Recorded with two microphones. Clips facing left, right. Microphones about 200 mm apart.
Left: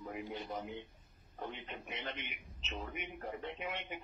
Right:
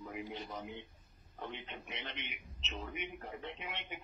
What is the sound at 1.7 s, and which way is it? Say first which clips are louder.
Speech: left 2 dB; 50° left (ahead or behind).